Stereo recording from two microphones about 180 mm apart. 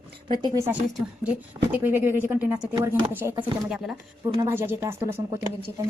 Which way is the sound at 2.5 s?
25° right (ahead or behind).